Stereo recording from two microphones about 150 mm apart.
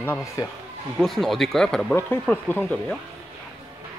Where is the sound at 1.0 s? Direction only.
Centre (ahead or behind).